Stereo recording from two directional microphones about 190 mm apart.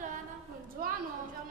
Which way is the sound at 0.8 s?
50° right (ahead or behind).